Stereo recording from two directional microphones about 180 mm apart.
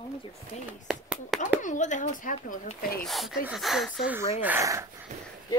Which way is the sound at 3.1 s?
Centre (ahead or behind).